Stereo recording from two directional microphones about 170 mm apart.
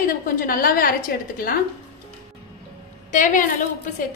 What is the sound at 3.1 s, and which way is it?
Speech, 50° left (ahead or behind).